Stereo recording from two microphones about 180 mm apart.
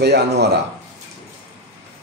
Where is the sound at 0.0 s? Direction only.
65° right (ahead or behind).